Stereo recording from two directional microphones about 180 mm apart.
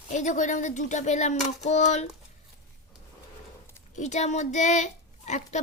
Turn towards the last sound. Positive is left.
turn(degrees=40)  # may be behind; listen again after turning